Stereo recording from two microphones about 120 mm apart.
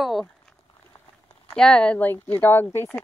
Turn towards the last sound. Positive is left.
turn(degrees=15)  # may be behind; listen again after turning